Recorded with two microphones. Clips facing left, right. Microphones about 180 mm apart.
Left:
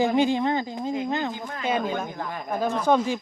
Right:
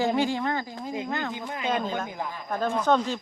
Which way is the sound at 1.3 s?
15° right (ahead or behind).